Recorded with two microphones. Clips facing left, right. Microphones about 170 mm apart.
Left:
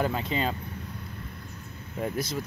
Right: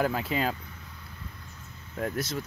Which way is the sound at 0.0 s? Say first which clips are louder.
Even; 5° right (ahead or behind).